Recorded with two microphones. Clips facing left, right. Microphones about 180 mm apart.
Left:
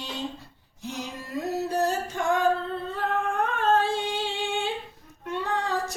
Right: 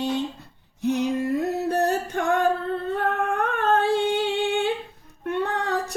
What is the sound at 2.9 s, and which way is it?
Singing, 60° right (ahead or behind).